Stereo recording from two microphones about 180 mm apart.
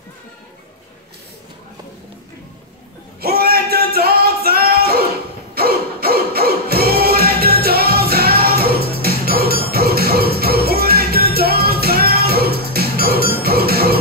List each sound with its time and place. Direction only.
3.2 s music: 55° right (ahead or behind)